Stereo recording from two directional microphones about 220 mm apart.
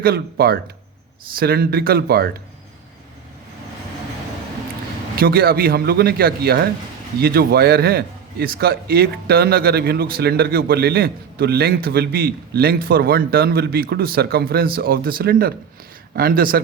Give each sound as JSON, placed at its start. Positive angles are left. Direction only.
{"t": 0.0, "sound": "a man's voice", "side_deg": -45}
{"t": 5.1, "sound": "a man's voice", "side_deg": -40}